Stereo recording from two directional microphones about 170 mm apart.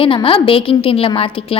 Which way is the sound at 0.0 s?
30° left (ahead or behind).